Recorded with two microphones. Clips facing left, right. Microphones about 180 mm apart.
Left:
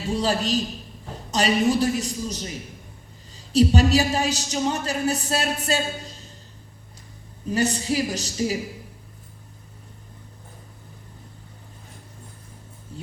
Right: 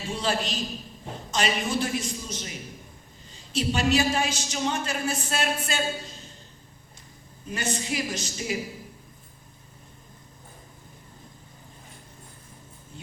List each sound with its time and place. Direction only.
0.1 s a woman's voice: 40° left (ahead or behind)
7.5 s a woman's voice: 35° left (ahead or behind)